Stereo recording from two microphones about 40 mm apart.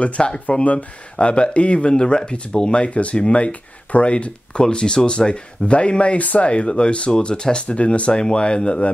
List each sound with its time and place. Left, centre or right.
0.0 s speech: left